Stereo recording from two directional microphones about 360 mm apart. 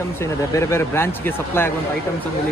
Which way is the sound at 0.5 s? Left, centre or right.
Centre.